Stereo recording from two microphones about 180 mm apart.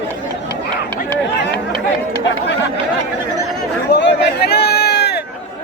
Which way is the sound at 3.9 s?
70° left (ahead or behind).